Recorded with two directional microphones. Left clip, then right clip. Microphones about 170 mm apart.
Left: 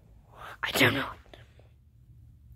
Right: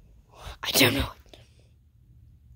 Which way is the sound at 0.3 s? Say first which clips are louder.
Right 3 dB; 30° right (ahead or behind).